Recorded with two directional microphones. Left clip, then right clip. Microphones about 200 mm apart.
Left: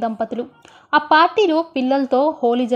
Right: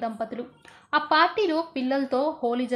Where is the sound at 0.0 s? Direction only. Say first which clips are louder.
Left 8 dB; 30° left (ahead or behind).